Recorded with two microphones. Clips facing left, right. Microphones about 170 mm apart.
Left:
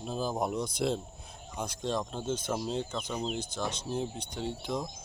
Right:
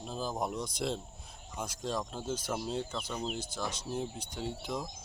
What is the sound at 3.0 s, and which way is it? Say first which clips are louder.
Speech: left 3 dB; 15° left (ahead or behind).